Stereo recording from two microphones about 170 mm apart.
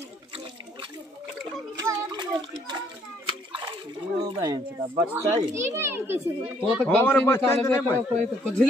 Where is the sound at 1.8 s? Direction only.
20° right (ahead or behind).